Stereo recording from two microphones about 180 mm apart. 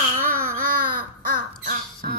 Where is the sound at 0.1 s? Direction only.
50° right (ahead or behind).